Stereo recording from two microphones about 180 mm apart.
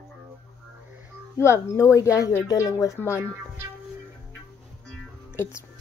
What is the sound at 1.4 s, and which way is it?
A woman's voice, 15° left (ahead or behind).